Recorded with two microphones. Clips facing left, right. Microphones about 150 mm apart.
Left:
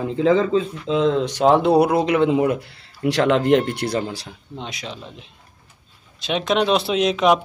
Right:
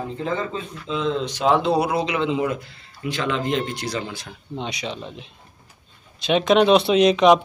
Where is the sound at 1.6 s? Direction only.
60° left (ahead or behind).